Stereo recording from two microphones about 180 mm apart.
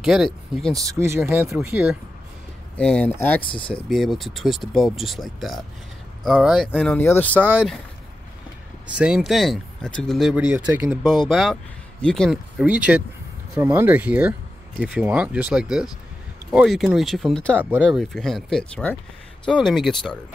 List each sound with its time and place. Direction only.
0.0 s speech: centre (ahead or behind)
0.7 s speech: 15° right (ahead or behind)
2.8 s speech: 5° left (ahead or behind)
3.4 s speech: 30° left (ahead or behind)
3.9 s speech: centre (ahead or behind)
6.7 s speech: 10° left (ahead or behind)
7.3 s speech: 10° right (ahead or behind)
8.9 s speech: 5° right (ahead or behind)